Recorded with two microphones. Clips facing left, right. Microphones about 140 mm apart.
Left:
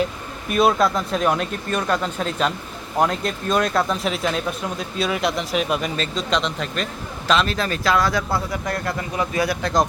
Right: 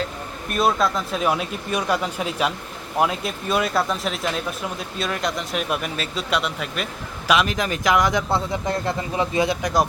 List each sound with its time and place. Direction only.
0.5 s speech: centre (ahead or behind); by 9.8 s 15° right (ahead or behind)